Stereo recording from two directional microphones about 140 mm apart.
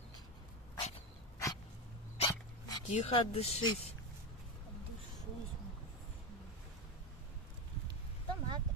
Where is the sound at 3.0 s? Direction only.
40° left (ahead or behind).